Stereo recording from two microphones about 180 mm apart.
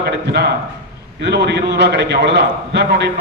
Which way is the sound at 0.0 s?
65° right (ahead or behind).